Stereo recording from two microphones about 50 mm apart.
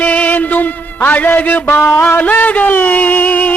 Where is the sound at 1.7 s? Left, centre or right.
Left.